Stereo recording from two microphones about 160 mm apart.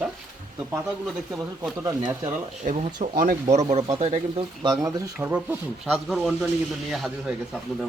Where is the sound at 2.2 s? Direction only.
45° right (ahead or behind); by 5.4 s 15° right (ahead or behind).